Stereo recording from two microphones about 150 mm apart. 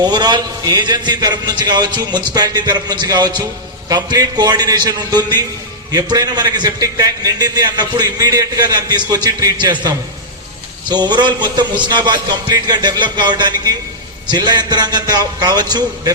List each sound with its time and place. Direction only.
0.0 s a man's voice: 30° right (ahead or behind)
10.8 s a man's voice: 30° right (ahead or behind)